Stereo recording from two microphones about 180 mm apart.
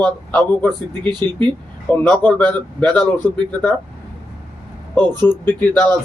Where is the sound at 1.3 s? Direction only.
10° left (ahead or behind).